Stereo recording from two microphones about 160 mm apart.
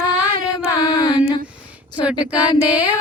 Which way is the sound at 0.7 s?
25° left (ahead or behind).